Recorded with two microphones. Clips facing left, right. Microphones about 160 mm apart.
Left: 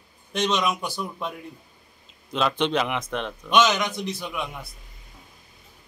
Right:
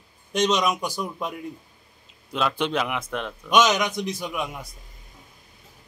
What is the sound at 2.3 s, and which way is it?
A man's voice, 10° right (ahead or behind).